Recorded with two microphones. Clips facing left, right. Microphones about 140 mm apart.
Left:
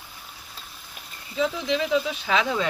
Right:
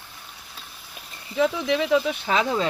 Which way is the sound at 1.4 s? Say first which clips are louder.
Right 3 dB; 60° right (ahead or behind).